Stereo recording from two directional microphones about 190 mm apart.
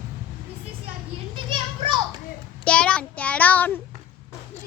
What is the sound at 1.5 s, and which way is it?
Children playing, 25° right (ahead or behind).